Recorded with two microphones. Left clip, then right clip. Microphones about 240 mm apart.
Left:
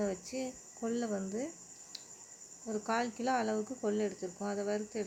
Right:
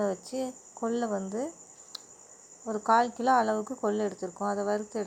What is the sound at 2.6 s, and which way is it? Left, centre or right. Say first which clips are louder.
Speech: right 7 dB; centre.